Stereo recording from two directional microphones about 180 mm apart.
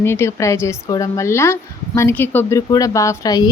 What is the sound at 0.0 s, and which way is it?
A woman's voice, 15° left (ahead or behind).